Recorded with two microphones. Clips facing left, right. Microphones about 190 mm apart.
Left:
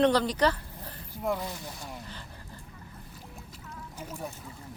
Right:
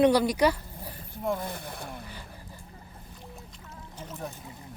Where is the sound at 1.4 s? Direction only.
55° right (ahead or behind).